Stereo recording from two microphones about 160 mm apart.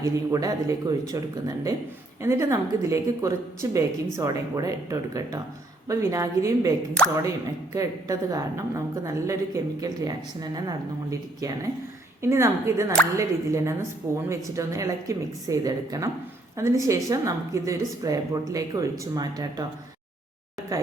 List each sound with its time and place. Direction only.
0.0 s a woman's voice: 20° right (ahead or behind)